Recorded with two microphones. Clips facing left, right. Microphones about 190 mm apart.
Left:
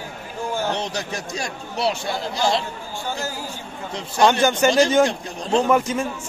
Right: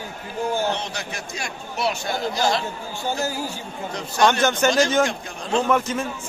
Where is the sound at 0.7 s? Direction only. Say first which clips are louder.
Left 4 dB; 40° left (ahead or behind).